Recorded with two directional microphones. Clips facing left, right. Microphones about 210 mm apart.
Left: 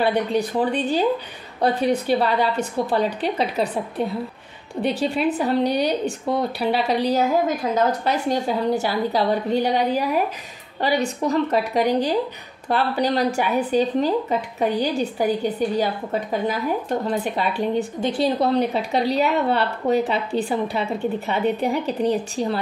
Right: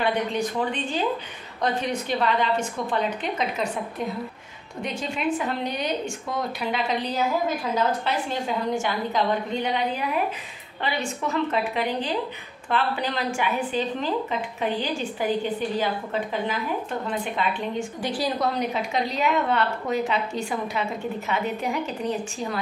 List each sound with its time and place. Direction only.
0.0 s a woman's voice: 35° left (ahead or behind)
8.0 s a woman's voice: 40° left (ahead or behind)
18.0 s a woman's voice: 25° left (ahead or behind)